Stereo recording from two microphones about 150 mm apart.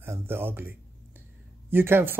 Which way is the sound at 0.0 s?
15° right (ahead or behind).